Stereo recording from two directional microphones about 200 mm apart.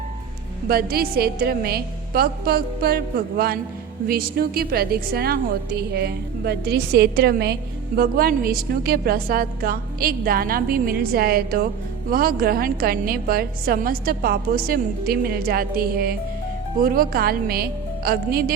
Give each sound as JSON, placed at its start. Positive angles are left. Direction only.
{"t": 0.7, "sound": "a woman's voice", "side_deg": -50}